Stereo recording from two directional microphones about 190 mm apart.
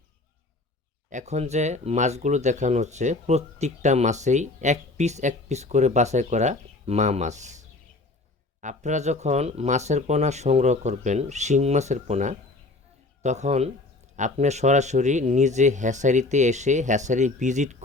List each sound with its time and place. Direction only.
1.1 s speech: 35° right (ahead or behind)
8.6 s speech: 40° right (ahead or behind)